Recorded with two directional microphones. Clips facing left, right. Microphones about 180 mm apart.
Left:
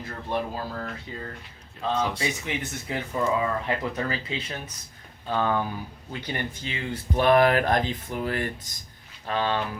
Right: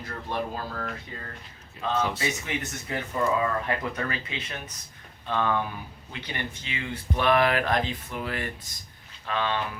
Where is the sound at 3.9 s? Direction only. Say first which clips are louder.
Left 3 dB; 25° left (ahead or behind).